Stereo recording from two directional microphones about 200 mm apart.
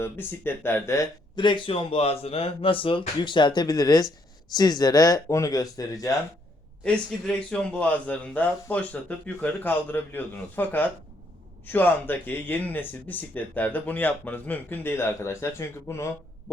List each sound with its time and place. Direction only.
0.0 s speech: 10° left (ahead or behind)
6.8 s speech: 5° left (ahead or behind)